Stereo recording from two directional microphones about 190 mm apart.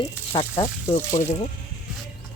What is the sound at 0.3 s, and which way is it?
Speech, 25° left (ahead or behind).